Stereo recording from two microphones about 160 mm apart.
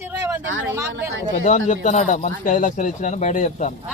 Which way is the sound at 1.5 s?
50° left (ahead or behind).